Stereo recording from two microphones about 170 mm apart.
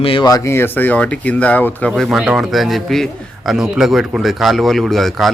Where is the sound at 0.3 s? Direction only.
20° left (ahead or behind).